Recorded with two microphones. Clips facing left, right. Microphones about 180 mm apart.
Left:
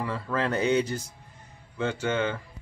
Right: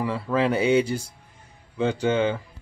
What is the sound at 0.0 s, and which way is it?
Speech, 10° right (ahead or behind).